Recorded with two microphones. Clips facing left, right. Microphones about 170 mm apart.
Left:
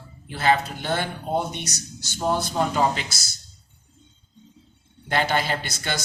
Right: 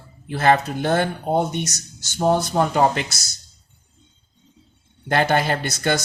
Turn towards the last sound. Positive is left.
turn(degrees=-50)  # may be behind; listen again after turning